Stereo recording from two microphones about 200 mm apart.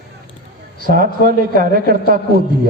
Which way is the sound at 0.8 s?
45° right (ahead or behind).